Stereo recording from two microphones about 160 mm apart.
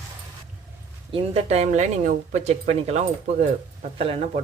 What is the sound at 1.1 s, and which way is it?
Speech, 40° right (ahead or behind).